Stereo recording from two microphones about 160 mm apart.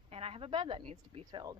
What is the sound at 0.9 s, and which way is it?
Speech, 40° right (ahead or behind).